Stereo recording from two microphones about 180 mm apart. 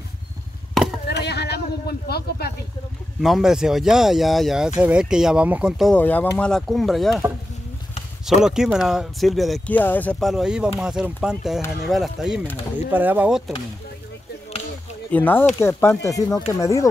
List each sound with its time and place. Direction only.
1.0 s vehicle: 65° left (ahead or behind)
3.2 s speech: centre (ahead or behind)
8.3 s speech: 5° right (ahead or behind)
10.3 s speech: 5° right (ahead or behind)
15.0 s speech: 10° left (ahead or behind)